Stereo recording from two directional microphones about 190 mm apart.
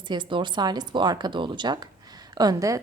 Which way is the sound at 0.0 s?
25° right (ahead or behind).